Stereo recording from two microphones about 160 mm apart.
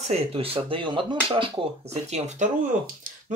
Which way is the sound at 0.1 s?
35° right (ahead or behind).